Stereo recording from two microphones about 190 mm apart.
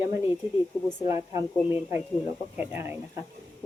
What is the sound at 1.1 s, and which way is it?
Speech, 15° right (ahead or behind).